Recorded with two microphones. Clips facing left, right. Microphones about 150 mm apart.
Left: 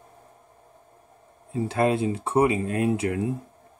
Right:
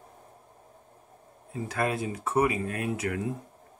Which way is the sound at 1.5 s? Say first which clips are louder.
Left 7 dB; 25° left (ahead or behind).